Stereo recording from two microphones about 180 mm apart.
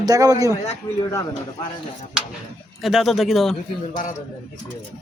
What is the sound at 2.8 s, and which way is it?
Speech, centre (ahead or behind).